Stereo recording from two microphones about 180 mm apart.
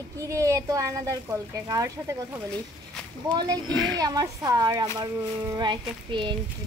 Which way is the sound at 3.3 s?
25° right (ahead or behind).